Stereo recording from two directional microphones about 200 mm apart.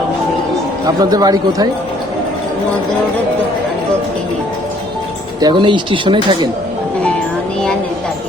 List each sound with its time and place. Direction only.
0.9 s speech: 20° right (ahead or behind)
5.4 s speech: 25° right (ahead or behind)